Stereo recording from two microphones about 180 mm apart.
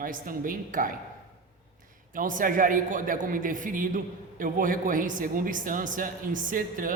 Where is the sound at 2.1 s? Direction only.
50° right (ahead or behind).